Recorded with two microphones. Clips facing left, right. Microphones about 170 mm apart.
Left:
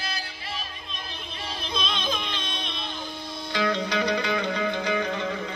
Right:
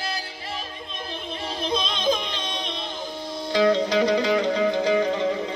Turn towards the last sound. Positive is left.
turn(degrees=-25)  # may be behind; listen again after turning